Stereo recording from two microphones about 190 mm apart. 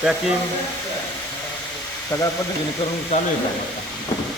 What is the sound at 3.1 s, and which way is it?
Speech, 35° left (ahead or behind).